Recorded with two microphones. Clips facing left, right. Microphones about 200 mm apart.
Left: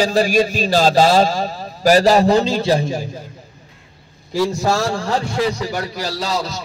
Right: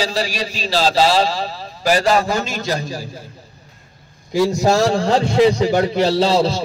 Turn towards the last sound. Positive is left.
turn(degrees=-30)  # may be behind; listen again after turning